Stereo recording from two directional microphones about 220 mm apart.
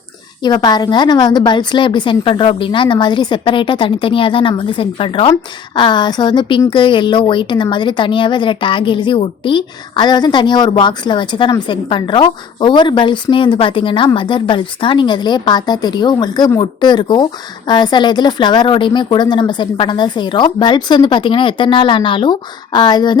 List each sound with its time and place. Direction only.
0.4 s a woman's voice: 20° left (ahead or behind)